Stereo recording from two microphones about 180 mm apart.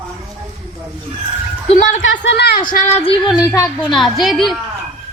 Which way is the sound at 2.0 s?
85° left.